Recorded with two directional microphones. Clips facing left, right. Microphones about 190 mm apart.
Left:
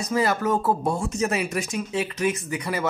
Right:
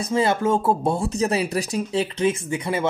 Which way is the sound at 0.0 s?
25° right (ahead or behind).